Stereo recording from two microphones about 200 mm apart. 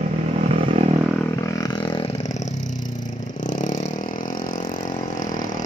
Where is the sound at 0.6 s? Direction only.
30° right (ahead or behind).